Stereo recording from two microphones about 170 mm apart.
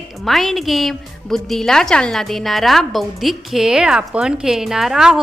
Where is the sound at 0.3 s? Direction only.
Centre (ahead or behind).